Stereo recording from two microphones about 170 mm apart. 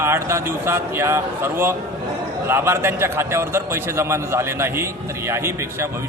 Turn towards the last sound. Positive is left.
turn(degrees=-15)  # may be behind; listen again after turning